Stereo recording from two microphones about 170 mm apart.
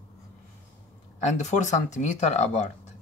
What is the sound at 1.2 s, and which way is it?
Speech, 45° left (ahead or behind).